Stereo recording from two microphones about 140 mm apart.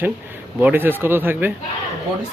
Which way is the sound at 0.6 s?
15° right (ahead or behind).